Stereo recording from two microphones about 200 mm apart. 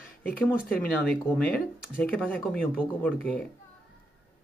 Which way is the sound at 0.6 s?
5° left (ahead or behind).